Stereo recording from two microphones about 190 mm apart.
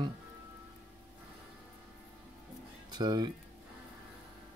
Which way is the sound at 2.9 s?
20° right (ahead or behind).